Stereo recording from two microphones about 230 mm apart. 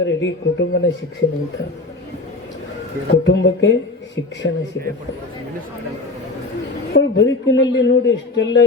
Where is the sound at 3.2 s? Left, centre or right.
Left.